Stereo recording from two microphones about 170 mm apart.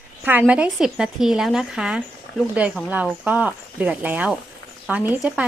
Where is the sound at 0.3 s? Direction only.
10° right (ahead or behind).